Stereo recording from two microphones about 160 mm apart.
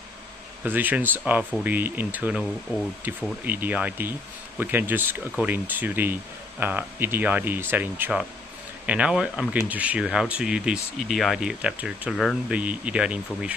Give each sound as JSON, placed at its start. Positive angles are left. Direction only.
{"t": 0.7, "sound": "speech", "side_deg": -10}